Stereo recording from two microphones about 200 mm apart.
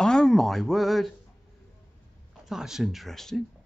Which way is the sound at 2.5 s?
Centre (ahead or behind).